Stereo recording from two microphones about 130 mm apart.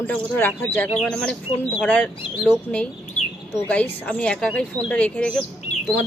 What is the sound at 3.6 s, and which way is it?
Speech, 10° left (ahead or behind).